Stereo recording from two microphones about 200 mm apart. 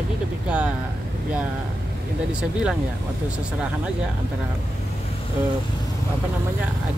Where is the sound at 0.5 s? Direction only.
5° right (ahead or behind).